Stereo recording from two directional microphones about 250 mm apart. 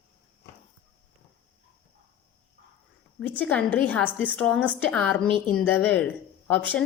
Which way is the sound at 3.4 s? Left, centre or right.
Centre.